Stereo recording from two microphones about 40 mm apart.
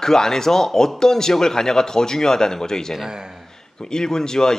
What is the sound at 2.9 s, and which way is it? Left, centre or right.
Speech, centre.